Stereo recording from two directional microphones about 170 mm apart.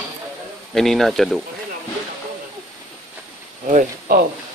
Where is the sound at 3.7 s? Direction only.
55° right (ahead or behind).